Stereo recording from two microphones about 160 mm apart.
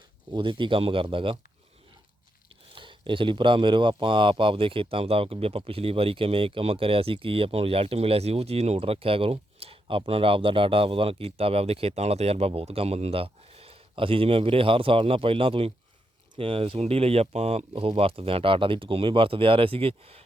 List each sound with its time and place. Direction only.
0.3 s speech: 30° right (ahead or behind)
2.7 s speech: 30° right (ahead or behind)